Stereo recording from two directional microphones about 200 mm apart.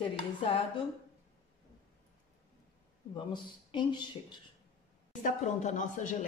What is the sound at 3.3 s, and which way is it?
Speech, 20° left (ahead or behind).